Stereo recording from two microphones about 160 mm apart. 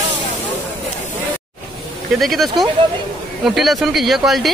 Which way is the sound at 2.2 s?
Centre (ahead or behind).